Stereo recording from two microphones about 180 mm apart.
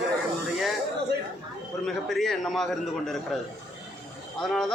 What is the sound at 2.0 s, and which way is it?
Speech, centre (ahead or behind).